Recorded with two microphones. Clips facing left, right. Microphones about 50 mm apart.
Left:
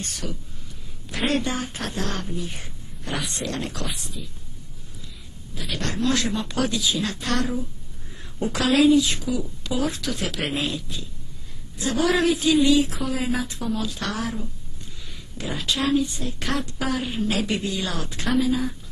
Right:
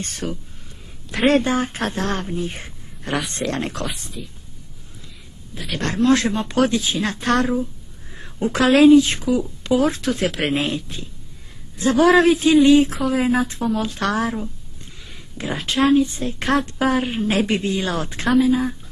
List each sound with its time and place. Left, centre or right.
0.0 s a woman's voice: right
5.8 s a woman's voice: right